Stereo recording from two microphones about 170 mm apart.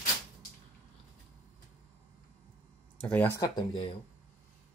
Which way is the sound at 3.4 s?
25° left (ahead or behind).